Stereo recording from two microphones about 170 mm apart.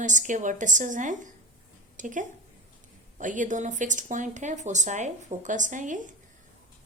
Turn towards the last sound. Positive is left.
turn(degrees=-50)  # may be behind; listen again after turning